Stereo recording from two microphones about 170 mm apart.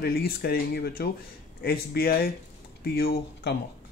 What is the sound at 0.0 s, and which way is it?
Speech, 60° left (ahead or behind).